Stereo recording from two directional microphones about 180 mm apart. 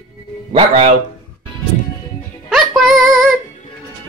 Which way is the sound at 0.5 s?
35° right (ahead or behind).